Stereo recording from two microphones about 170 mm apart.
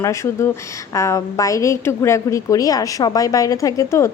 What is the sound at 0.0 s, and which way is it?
A woman's voice, 15° left (ahead or behind).